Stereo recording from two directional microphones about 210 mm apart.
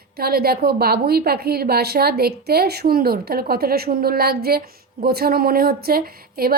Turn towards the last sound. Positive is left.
turn(degrees=-45)  # may be behind; listen again after turning